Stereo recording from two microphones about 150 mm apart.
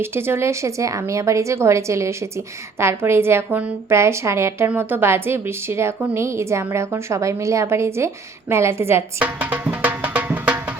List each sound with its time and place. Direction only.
0.0 s a woman's voice: 15° right (ahead or behind)